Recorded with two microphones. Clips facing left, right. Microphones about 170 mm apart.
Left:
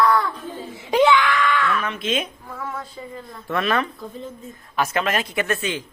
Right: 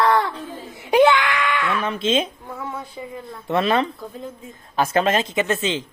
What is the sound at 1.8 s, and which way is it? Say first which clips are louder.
Speech: right 4 dB; 25° right (ahead or behind).